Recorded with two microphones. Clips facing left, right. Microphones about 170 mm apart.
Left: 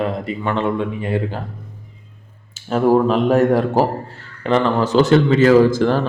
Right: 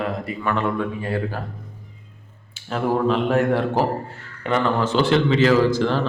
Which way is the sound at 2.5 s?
40° left (ahead or behind).